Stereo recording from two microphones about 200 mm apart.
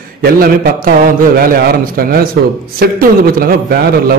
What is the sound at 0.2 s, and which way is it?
A man's voice, 45° right (ahead or behind).